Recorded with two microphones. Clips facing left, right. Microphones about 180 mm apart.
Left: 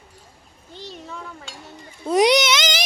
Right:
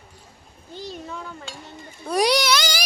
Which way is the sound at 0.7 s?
Centre (ahead or behind).